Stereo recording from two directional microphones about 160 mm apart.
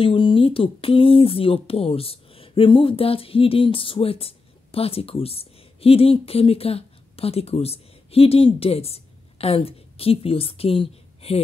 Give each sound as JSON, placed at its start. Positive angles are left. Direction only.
{"t": 0.0, "sound": "speech", "side_deg": 30}